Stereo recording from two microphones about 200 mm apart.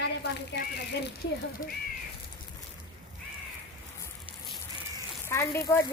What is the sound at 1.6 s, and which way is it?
Speech, 45° left (ahead or behind).